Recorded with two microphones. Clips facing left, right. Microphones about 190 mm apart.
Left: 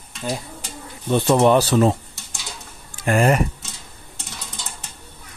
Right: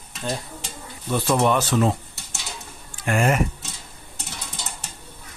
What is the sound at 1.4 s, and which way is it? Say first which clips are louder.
Speech: left 5 dB; 35° left (ahead or behind).